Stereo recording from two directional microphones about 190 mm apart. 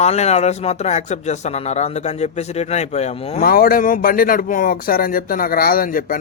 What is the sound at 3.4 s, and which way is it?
Speech, 50° left (ahead or behind).